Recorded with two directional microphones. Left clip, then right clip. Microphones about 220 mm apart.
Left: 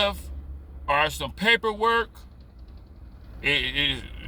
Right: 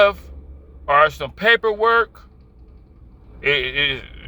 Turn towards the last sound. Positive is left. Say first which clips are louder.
# right 5 dB
turn(degrees=10)  # may be behind; listen again after turning